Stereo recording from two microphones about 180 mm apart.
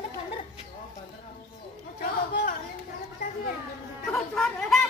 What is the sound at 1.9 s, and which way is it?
Speech, 55° left (ahead or behind).